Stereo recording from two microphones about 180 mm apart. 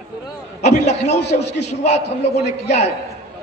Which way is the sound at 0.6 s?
40° left (ahead or behind).